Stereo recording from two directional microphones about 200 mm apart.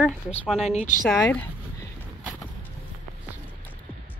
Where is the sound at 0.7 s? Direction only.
35° left (ahead or behind).